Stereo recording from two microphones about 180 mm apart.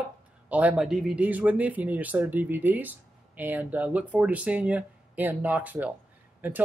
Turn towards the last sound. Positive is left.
turn(degrees=-10)  # may be behind; listen again after turning